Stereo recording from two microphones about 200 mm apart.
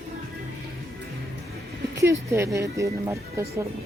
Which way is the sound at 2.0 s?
15° right (ahead or behind).